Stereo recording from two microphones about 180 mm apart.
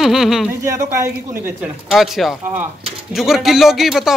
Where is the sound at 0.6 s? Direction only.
15° right (ahead or behind).